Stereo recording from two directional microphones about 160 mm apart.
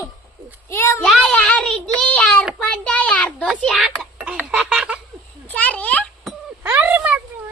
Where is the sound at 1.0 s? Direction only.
5° left (ahead or behind).